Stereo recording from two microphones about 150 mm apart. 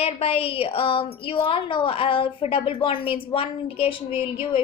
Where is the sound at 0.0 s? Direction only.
40° left (ahead or behind).